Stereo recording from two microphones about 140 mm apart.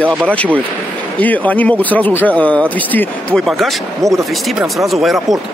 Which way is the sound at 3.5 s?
Centre (ahead or behind).